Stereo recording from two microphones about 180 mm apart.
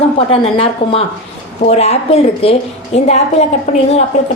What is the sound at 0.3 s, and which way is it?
A woman's voice, 35° left (ahead or behind).